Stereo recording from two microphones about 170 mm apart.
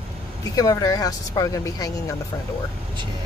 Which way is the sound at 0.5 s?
20° left (ahead or behind).